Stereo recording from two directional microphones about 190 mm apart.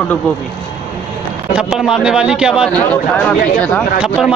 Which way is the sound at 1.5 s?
Centre (ahead or behind).